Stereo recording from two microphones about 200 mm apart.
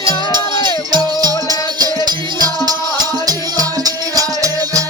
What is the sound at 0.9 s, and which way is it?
Music, 20° right (ahead or behind).